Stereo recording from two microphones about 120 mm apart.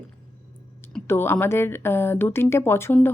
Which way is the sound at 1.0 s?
20° left (ahead or behind).